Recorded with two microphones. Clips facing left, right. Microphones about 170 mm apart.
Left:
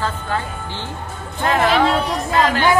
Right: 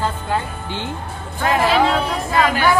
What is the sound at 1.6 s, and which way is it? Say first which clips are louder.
Speech: even; centre (ahead or behind).